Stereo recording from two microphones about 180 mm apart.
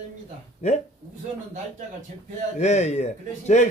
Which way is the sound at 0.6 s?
40° left (ahead or behind).